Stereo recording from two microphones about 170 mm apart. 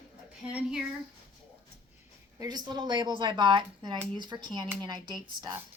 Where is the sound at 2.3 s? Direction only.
20° right (ahead or behind).